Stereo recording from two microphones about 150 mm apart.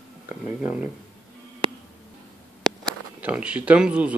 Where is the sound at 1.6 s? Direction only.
35° right (ahead or behind).